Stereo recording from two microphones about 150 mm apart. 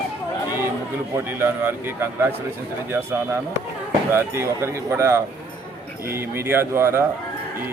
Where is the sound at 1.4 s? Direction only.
15° right (ahead or behind).